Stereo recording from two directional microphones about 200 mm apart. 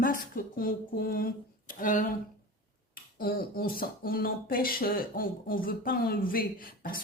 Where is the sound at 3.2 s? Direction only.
50° left (ahead or behind).